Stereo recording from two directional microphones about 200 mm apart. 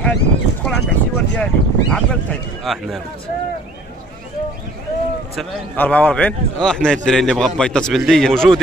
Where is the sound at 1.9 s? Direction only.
Centre (ahead or behind).